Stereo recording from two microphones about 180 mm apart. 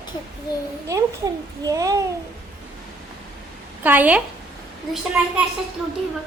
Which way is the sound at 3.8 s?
10° right (ahead or behind).